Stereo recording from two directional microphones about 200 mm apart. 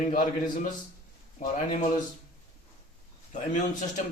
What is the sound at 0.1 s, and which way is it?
Speech, 40° left (ahead or behind).